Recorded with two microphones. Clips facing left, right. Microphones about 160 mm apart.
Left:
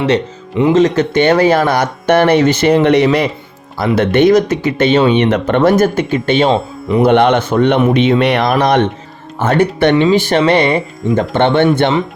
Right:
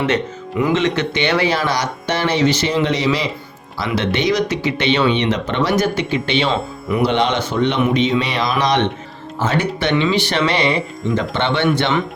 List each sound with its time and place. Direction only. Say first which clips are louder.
0.7 s speech: left 9 dB; 40° left (ahead or behind)
6.5 s speech: left 6 dB; 25° left (ahead or behind)
7.0 s speech: left 8 dB; 55° left (ahead or behind)